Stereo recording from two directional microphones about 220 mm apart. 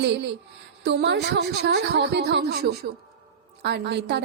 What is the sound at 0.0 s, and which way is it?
A woman's voice, 50° right (ahead or behind).